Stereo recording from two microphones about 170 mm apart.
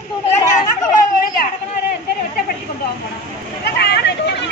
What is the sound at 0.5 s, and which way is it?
Chatter, 50° left (ahead or behind).